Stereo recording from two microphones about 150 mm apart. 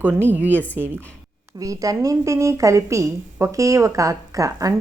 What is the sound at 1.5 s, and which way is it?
A woman's voice, 20° right (ahead or behind).